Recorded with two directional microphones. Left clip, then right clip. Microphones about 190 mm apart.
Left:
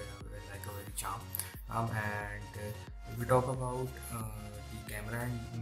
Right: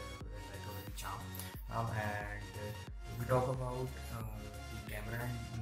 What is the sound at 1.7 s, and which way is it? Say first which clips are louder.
Speech: left 3 dB; 20° left (ahead or behind).